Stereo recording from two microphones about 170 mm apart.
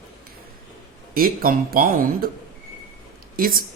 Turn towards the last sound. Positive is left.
turn(degrees=-60)  # may be behind; listen again after turning